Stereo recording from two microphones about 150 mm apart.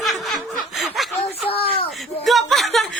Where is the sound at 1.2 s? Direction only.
40° left (ahead or behind).